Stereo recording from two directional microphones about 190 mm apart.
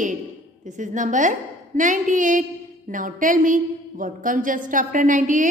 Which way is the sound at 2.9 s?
45° right (ahead or behind).